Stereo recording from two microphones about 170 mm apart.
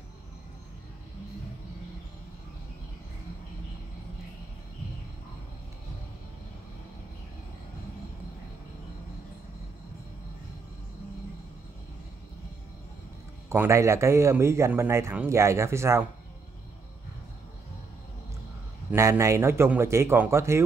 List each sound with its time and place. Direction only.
13.5 s a man's voice: 15° right (ahead or behind)
18.9 s a man's voice: 15° right (ahead or behind)